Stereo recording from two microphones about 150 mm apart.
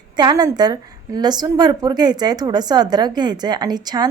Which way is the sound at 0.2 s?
30° right (ahead or behind).